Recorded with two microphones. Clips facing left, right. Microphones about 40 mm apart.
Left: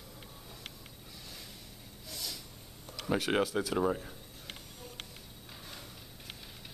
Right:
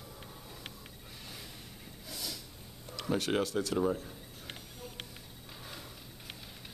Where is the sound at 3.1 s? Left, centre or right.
Centre.